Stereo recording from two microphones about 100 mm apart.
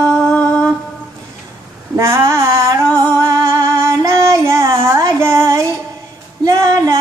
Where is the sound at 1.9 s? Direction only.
30° right (ahead or behind).